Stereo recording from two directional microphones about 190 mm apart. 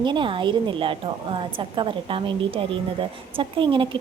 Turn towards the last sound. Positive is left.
turn(degrees=-25)  # may be behind; listen again after turning